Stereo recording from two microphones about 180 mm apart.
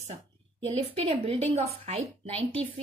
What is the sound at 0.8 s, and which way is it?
A woman's voice, 30° right (ahead or behind).